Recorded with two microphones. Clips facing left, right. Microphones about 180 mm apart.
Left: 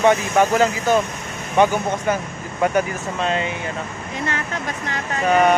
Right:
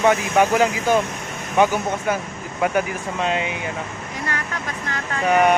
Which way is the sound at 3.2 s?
15° right (ahead or behind).